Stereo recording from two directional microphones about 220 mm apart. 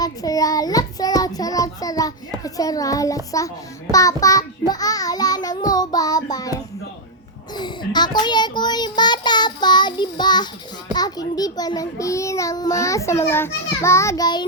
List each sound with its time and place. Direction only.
0.0 s a child's voice: 15° left (ahead or behind)